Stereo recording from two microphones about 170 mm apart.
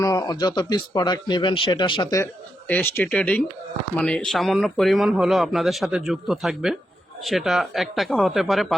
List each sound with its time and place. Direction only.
0.0 s speech: 20° left (ahead or behind); by 8.6 s centre (ahead or behind)